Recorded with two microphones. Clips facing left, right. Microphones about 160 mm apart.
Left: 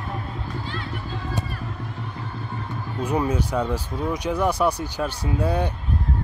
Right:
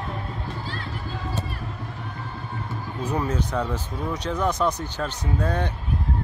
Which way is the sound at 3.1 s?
10° left (ahead or behind).